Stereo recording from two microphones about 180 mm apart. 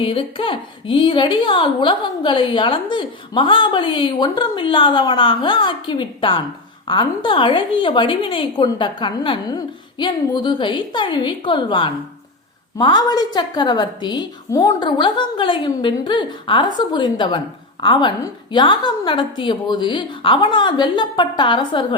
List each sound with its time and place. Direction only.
0.0 s a woman's voice: 30° left (ahead or behind)